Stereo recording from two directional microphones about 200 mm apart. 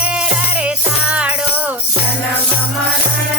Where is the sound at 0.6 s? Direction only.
5° right (ahead or behind).